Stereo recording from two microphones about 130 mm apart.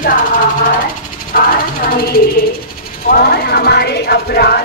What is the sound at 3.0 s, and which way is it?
Speech, 90° left.